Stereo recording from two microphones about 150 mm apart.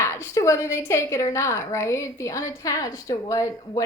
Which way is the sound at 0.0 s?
20° left (ahead or behind).